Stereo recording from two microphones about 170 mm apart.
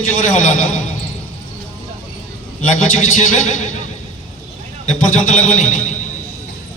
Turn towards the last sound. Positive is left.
turn(degrees=45)  # may be behind; listen again after turning